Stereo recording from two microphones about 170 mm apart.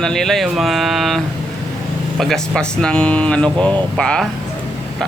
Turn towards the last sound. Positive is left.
turn(degrees=5)  # may be behind; listen again after turning